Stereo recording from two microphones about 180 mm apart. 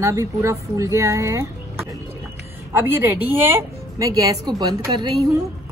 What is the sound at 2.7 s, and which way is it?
A woman's voice, 10° right (ahead or behind).